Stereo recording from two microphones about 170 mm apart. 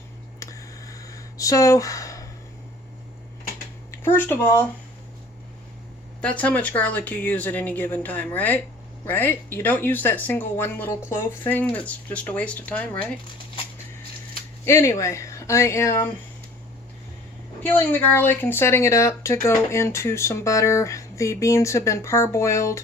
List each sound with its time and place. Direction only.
0.3 s a sound: 20° left (ahead or behind)
4.0 s speech: 10° left (ahead or behind)
6.2 s speech: 10° left (ahead or behind)
14.6 s speech: 15° left (ahead or behind)
17.6 s speech: 10° left (ahead or behind)